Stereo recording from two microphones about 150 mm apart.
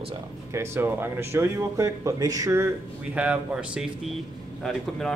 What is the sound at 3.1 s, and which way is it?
Speech, 10° right (ahead or behind).